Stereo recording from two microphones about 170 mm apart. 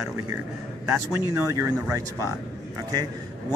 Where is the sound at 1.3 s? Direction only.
20° right (ahead or behind).